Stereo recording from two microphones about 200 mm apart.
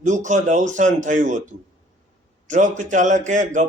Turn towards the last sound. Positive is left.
turn(degrees=-40)  # may be behind; listen again after turning